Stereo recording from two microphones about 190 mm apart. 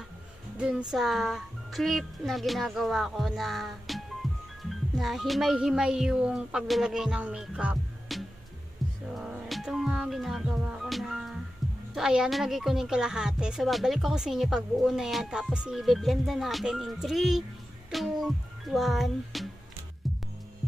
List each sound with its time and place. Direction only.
0.6 s a woman's voice: 5° right (ahead or behind)
4.2 s music: centre (ahead or behind)
4.6 s speech: centre (ahead or behind)
9.1 s music: 5° right (ahead or behind)
11.9 s speech: 5° right (ahead or behind)